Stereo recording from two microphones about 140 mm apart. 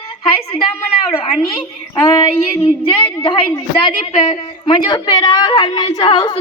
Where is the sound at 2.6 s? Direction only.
40° left (ahead or behind).